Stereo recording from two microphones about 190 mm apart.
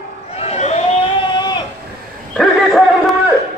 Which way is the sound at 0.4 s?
35° left (ahead or behind).